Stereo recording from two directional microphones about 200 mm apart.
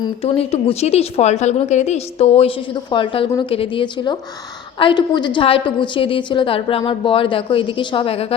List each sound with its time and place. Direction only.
0.0 s a woman's voice: 30° left (ahead or behind)